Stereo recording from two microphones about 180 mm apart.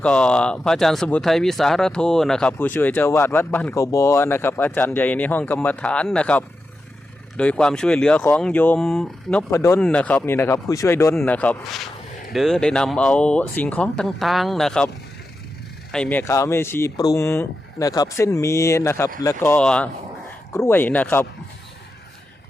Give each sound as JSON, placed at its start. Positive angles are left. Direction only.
{"t": 0.0, "sound": "speech", "side_deg": 5}
{"t": 9.5, "sound": "speech", "side_deg": 15}
{"t": 11.1, "sound": "speech", "side_deg": 5}
{"t": 15.9, "sound": "speech", "side_deg": 5}